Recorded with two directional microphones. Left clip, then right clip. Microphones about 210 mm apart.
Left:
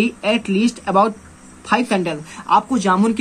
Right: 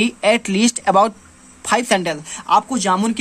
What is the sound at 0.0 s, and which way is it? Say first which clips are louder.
Speech: right 3 dB; 35° right (ahead or behind).